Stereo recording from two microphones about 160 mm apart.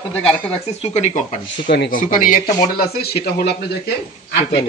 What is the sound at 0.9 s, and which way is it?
Speech, 45° left (ahead or behind).